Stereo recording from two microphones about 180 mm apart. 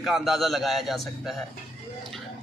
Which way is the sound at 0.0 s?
Centre (ahead or behind).